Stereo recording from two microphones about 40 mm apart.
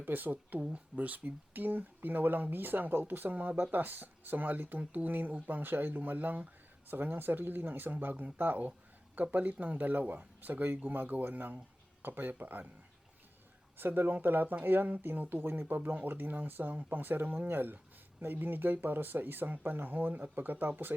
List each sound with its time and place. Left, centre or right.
0.0 s speech: right
0.9 s speech: right
3.3 s speech: right
6.8 s speech: right
13.7 s speech: right